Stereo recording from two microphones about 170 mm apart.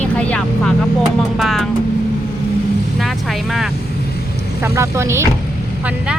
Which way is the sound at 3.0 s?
Centre (ahead or behind).